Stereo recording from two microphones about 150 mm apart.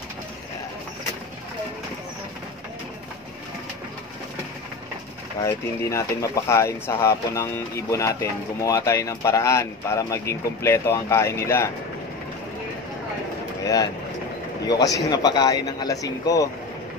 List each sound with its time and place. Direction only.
5.4 s speech: 20° left (ahead or behind)
14.7 s speech: 25° left (ahead or behind)